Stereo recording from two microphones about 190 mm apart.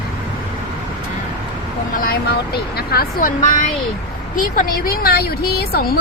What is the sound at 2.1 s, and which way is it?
Speech, 55° left (ahead or behind).